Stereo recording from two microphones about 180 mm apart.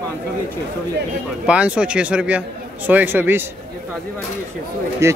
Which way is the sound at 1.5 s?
5° right (ahead or behind).